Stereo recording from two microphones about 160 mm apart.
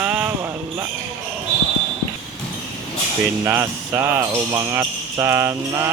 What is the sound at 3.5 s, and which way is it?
Speech, 15° right (ahead or behind).